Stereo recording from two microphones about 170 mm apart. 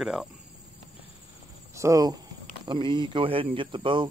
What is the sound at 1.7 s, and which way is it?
Speech, 20° right (ahead or behind).